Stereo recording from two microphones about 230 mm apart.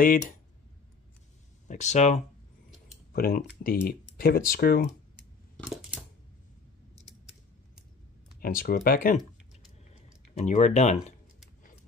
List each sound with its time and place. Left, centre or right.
0.0 s speech: left
1.7 s speech: left
3.1 s speech: left
8.4 s speech: left
9.2 s a sound: centre
10.3 s speech: left